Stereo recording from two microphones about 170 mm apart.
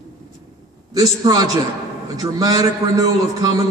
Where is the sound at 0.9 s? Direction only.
20° right (ahead or behind).